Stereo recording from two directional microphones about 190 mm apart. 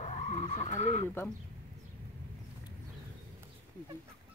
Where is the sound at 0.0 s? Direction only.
35° left (ahead or behind).